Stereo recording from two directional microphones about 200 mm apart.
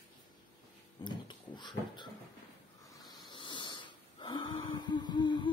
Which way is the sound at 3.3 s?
25° left (ahead or behind).